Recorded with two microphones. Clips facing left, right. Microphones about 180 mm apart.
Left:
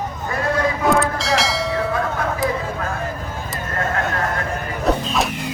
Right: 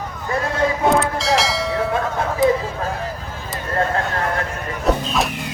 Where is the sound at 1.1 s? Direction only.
Centre (ahead or behind).